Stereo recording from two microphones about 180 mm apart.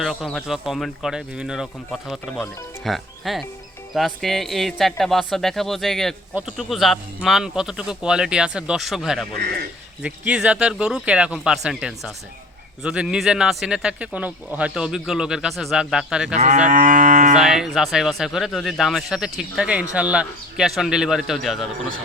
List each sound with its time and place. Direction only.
0.0 s speech: centre (ahead or behind)
16.3 s cattle: 40° right (ahead or behind)
16.6 s moo: 45° right (ahead or behind)
17.3 s speech: 5° right (ahead or behind)